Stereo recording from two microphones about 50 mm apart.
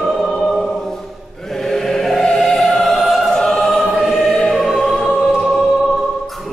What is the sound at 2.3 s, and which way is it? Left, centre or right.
Music, centre.